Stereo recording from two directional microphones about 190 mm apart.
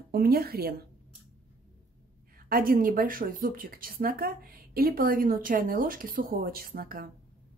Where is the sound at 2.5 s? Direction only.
50° right (ahead or behind).